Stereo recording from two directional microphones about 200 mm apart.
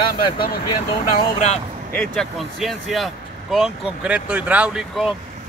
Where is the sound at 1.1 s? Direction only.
35° left (ahead or behind).